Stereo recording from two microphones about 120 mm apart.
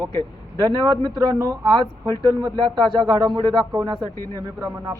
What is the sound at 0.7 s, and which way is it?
A man's voice, 35° right (ahead or behind).